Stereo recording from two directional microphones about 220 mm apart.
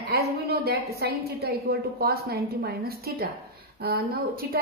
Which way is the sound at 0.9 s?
45° right (ahead or behind).